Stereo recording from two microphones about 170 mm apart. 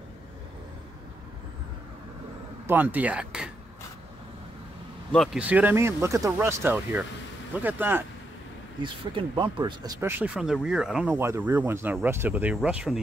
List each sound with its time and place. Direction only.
2.6 s speech: 10° right (ahead or behind)
5.1 s speech: centre (ahead or behind)
5.4 s speech: 10° right (ahead or behind)
8.8 s speech: 30° right (ahead or behind)
9.9 s speech: 10° right (ahead or behind)